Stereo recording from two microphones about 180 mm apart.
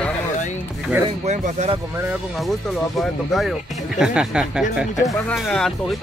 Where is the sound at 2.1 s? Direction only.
Centre (ahead or behind).